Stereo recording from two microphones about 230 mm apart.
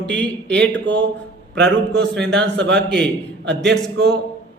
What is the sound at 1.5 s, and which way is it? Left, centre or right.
Speech, centre.